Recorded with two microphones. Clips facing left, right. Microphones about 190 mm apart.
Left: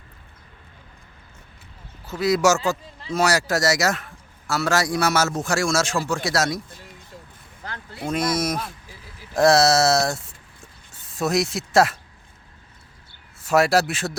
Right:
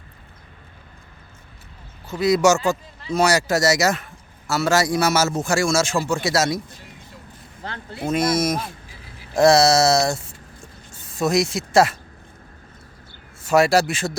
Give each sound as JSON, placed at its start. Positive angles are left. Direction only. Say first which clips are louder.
{"t": 2.0, "sound": "speech", "louder": "right 2 dB", "side_deg": 0}
{"t": 7.6, "sound": "speech", "louder": "right 3 dB", "side_deg": -25}
{"t": 8.1, "sound": "speech", "louder": "right 3 dB", "side_deg": 0}
{"t": 9.3, "sound": "a sound", "louder": "right 2 dB", "side_deg": 0}
{"t": 13.4, "sound": "speech", "louder": "right 2 dB", "side_deg": 0}